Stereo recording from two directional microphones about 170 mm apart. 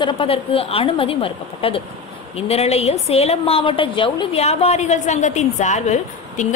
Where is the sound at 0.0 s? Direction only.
30° left (ahead or behind).